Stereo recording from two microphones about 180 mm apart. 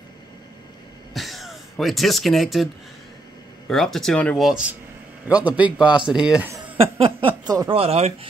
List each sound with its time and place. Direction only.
1.1 s a sound: centre (ahead or behind)
3.6 s speech: centre (ahead or behind)
6.8 s speech: 30° right (ahead or behind)